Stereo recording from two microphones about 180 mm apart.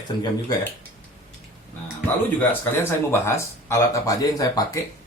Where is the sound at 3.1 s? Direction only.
15° left (ahead or behind).